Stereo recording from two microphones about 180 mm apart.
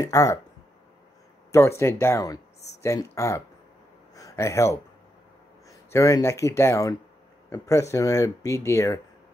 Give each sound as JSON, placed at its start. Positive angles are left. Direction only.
{"t": 0.0, "sound": "speech", "side_deg": 20}
{"t": 1.5, "sound": "speech", "side_deg": 15}
{"t": 4.1, "sound": "a sound", "side_deg": 20}
{"t": 5.7, "sound": "speech", "side_deg": 15}